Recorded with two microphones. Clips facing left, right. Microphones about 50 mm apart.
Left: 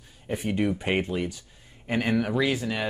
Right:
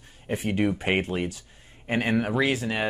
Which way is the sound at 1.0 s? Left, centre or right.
Right.